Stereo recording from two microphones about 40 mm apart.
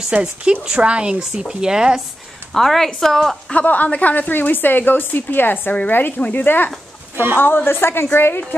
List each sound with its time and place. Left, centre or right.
0.1 s speech: right
1.3 s speech: centre
2.5 s speech: centre
3.5 s speech: left
4.3 s a woman's voice: left